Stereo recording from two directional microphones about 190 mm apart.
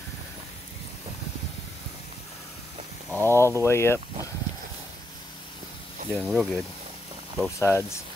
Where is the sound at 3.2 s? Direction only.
15° left (ahead or behind).